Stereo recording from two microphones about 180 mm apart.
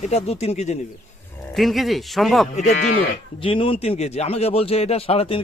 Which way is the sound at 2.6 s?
40° left (ahead or behind).